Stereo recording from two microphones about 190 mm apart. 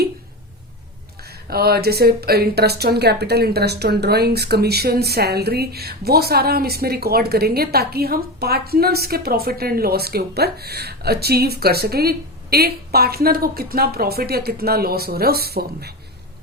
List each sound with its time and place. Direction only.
1.5 s speech: 55° right (ahead or behind)